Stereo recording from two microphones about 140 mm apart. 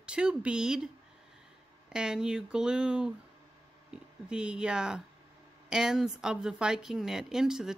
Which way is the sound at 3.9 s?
5° right (ahead or behind).